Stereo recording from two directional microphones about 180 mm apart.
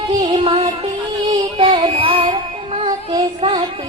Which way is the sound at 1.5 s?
35° right (ahead or behind).